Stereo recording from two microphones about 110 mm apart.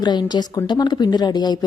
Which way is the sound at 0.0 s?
40° left (ahead or behind).